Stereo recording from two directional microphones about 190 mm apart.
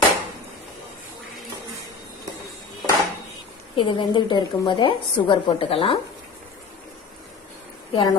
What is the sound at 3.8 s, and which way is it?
A woman's voice, 25° left (ahead or behind).